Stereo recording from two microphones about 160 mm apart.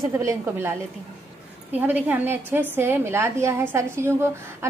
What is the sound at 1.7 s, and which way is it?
A woman's voice, 10° right (ahead or behind).